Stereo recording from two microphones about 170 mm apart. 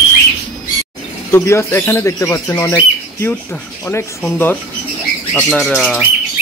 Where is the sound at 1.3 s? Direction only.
15° left (ahead or behind).